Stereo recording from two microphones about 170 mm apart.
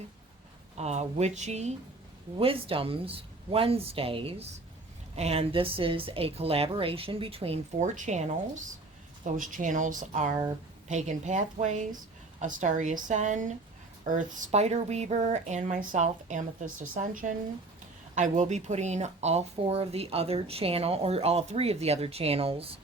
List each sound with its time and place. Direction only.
0.8 s speech: 40° right (ahead or behind)